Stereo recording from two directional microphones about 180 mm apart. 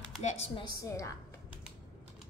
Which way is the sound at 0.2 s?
35° left (ahead or behind).